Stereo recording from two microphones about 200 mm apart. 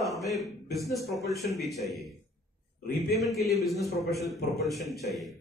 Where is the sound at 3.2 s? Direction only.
Centre (ahead or behind).